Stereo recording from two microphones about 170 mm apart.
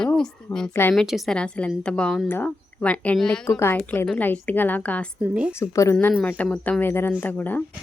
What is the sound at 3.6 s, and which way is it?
Speech, 15° left (ahead or behind).